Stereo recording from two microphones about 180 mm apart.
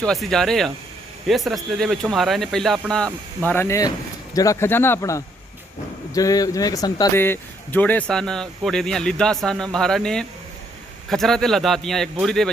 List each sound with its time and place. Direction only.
0.0 s speech: centre (ahead or behind)